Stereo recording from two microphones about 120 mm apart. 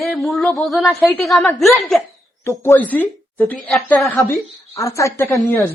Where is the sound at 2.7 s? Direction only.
15° left (ahead or behind).